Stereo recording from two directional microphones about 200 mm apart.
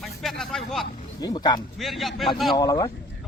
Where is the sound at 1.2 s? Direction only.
20° left (ahead or behind).